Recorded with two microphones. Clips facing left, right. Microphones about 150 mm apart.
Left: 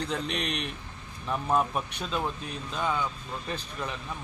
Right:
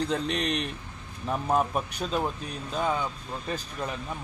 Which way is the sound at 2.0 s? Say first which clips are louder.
Right 3 dB; 40° right (ahead or behind).